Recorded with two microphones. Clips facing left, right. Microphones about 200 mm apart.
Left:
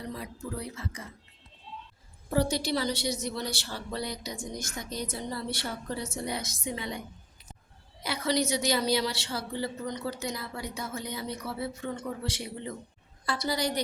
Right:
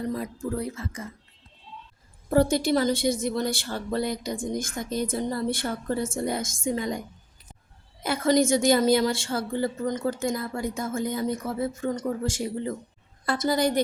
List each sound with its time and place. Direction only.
0.0 s a woman's voice: 45° right (ahead or behind)
2.3 s a woman's voice: 50° right (ahead or behind)
8.0 s a woman's voice: 50° right (ahead or behind)